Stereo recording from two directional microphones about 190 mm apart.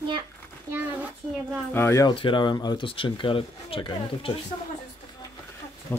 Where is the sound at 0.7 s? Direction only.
10° right (ahead or behind).